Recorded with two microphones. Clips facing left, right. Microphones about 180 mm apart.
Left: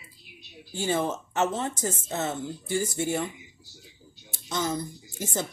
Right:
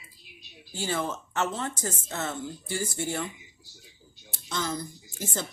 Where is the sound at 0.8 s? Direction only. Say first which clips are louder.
Left 4 dB; 20° left (ahead or behind).